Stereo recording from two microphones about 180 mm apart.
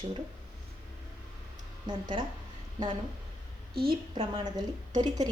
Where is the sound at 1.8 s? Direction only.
25° right (ahead or behind).